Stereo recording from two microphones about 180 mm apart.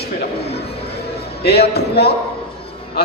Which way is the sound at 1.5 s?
65° left (ahead or behind).